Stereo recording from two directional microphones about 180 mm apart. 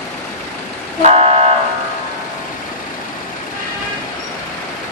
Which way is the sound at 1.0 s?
35° right (ahead or behind).